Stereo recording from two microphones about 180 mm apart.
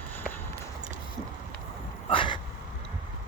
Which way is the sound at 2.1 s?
30° left (ahead or behind).